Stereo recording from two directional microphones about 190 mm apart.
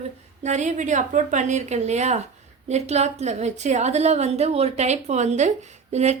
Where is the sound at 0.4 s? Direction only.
40° right (ahead or behind).